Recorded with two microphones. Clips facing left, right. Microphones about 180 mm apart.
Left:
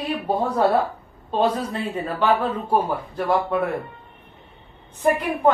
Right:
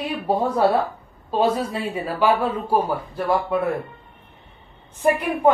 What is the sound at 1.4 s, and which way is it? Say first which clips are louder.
A woman's voice: right 1 dB; 10° right (ahead or behind).